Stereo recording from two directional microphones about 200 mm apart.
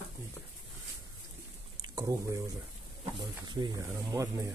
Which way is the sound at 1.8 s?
15° right (ahead or behind).